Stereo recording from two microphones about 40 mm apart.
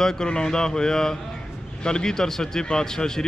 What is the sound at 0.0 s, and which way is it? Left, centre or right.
Speech, centre.